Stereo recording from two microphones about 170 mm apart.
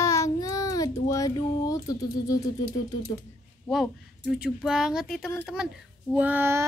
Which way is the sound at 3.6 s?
Centre (ahead or behind).